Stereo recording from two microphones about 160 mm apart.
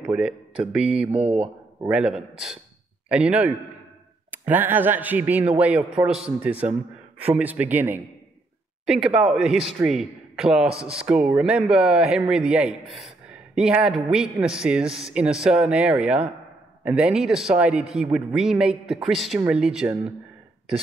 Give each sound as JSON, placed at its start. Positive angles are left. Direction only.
{"t": 0.0, "sound": "speech", "side_deg": -5}
{"t": 1.1, "sound": "speech", "side_deg": -40}
{"t": 1.9, "sound": "speech", "side_deg": -5}